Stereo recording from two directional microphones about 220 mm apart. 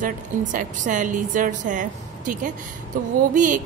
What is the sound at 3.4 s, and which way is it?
Speech, 35° right (ahead or behind).